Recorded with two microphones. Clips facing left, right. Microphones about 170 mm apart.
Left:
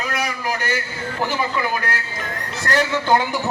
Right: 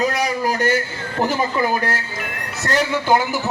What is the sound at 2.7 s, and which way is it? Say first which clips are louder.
Speech: even; 20° right (ahead or behind).